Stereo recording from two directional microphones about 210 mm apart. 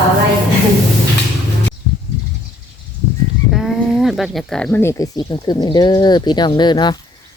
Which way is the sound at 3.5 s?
Centre (ahead or behind).